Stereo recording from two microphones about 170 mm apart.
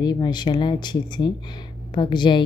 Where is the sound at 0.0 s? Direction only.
25° left (ahead or behind).